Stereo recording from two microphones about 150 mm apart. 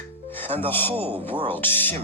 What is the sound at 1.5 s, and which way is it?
Speech, 15° left (ahead or behind).